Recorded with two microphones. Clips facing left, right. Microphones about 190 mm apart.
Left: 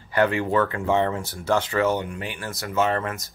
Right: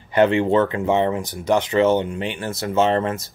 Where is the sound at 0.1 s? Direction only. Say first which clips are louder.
Right 5 dB; 25° right (ahead or behind).